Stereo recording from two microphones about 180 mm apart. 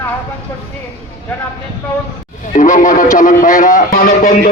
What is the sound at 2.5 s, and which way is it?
Speech, 45° left (ahead or behind).